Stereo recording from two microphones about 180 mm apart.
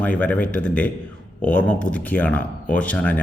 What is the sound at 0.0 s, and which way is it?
A man's voice, 10° left (ahead or behind).